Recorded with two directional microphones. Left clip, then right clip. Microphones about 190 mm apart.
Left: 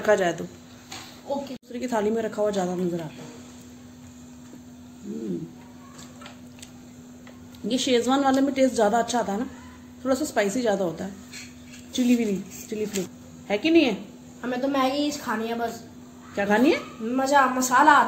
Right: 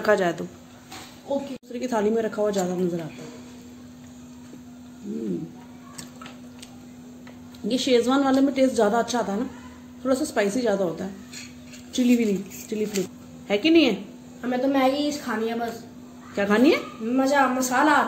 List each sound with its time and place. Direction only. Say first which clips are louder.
0.0 s a woman's voice: even; 5° right (ahead or behind)
1.7 s a woman's voice: right 2 dB; centre (ahead or behind)
7.6 s a woman's voice: right 2 dB; 5° left (ahead or behind)
14.4 s a woman's voice: right 2 dB; 45° left (ahead or behind)
16.3 s speech: right 1 dB; 10° right (ahead or behind)
17.1 s a woman's voice: left 1 dB; 45° left (ahead or behind)